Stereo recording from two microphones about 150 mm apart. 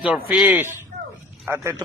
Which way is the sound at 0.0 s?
10° right (ahead or behind).